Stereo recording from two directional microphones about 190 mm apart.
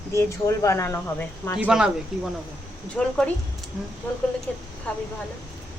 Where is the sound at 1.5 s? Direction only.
5° right (ahead or behind).